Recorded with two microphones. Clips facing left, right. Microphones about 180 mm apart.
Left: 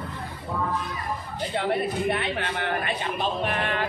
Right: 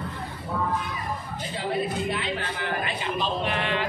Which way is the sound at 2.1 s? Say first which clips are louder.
Left 2 dB; 60° left (ahead or behind).